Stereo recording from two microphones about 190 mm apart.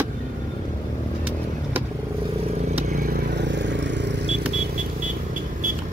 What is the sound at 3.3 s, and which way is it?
Vehicle, 65° right (ahead or behind).